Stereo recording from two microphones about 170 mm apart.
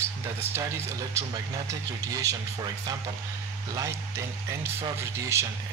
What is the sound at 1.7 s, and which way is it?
Speech, 20° right (ahead or behind).